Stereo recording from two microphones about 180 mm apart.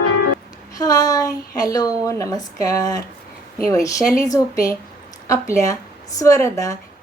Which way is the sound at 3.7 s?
20° left (ahead or behind).